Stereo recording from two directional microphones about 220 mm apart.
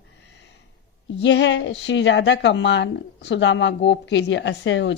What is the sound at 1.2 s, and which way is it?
A woman's voice, 55° left (ahead or behind).